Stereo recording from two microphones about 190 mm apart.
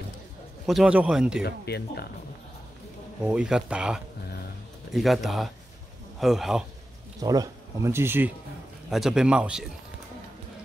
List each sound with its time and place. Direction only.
0.7 s speech: 5° right (ahead or behind)
1.4 s speech: 55° left (ahead or behind)
3.2 s speech: 5° right (ahead or behind)
7.2 s speech: 20° right (ahead or behind); by 9.7 s 5° right (ahead or behind)